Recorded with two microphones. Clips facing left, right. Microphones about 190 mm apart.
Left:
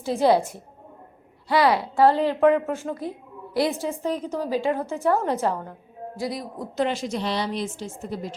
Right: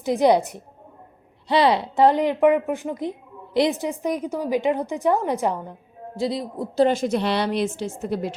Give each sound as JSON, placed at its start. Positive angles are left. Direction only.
{"t": 0.0, "sound": "a woman's voice", "side_deg": -15}
{"t": 6.8, "sound": "a woman's voice", "side_deg": -50}